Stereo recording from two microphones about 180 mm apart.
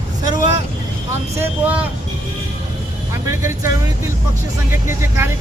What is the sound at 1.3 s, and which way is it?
Speech, 10° right (ahead or behind).